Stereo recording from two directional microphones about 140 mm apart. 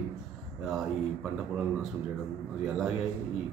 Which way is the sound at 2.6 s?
5° right (ahead or behind).